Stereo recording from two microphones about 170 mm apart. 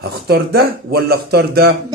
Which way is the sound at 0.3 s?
65° right (ahead or behind).